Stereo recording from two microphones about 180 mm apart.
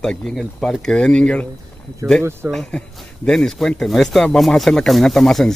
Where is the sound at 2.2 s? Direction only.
15° right (ahead or behind).